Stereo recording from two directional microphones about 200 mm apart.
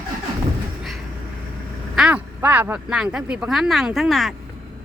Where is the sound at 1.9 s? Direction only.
5° right (ahead or behind).